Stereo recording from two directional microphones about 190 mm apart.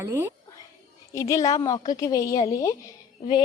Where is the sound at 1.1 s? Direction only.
15° left (ahead or behind).